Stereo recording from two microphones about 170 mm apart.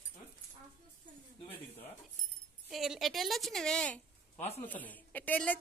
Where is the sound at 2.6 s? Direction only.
Centre (ahead or behind).